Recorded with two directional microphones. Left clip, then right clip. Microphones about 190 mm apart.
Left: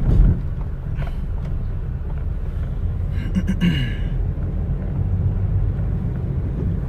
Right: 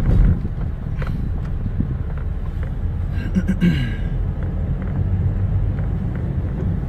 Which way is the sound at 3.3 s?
10° left (ahead or behind).